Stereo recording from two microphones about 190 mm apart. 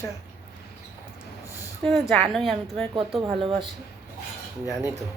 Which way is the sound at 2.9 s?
30° right (ahead or behind).